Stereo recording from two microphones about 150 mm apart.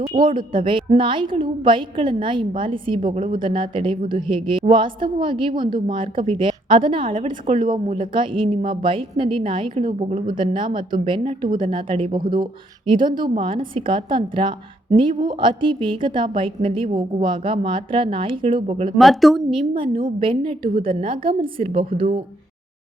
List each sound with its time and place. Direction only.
0.0 s a woman's voice: 35° right (ahead or behind)
3.0 s a woman's voice: 60° right (ahead or behind)
3.3 s a woman's voice: 35° right (ahead or behind)
18.9 s speech: centre (ahead or behind)
19.5 s a woman's voice: 35° right (ahead or behind)